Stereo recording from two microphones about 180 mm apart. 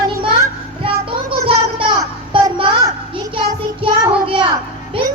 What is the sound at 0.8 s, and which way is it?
Child singing, 30° right (ahead or behind).